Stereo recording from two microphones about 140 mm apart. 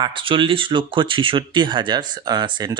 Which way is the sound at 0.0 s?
35° right (ahead or behind).